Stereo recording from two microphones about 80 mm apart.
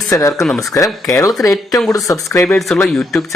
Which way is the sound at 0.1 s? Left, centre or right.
Left.